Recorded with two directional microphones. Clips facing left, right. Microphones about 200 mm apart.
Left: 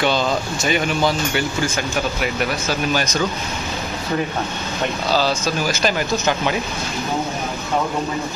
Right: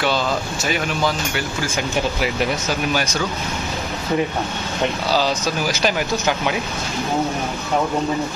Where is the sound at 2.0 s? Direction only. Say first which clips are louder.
Right 2 dB; 25° right (ahead or behind).